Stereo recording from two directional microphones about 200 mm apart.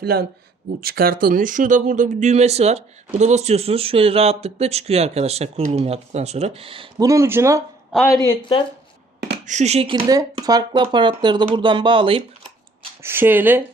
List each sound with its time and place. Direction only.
0.0 s speech: 50° right (ahead or behind); by 7.1 s 25° right (ahead or behind)
7.1 s speech: 15° right (ahead or behind)
8.3 s a woman's voice: 25° left (ahead or behind)
9.5 s speech: 35° right (ahead or behind)
13.0 s speech: 10° right (ahead or behind)